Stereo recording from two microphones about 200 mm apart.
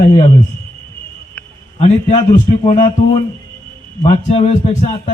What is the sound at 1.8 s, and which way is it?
Speech, 35° left (ahead or behind).